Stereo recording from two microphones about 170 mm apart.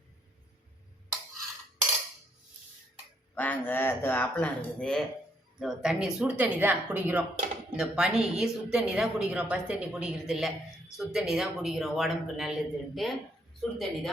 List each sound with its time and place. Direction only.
3.3 s speech: 10° left (ahead or behind)